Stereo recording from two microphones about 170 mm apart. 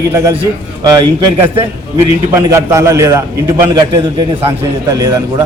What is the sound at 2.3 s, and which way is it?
Speech, 15° right (ahead or behind).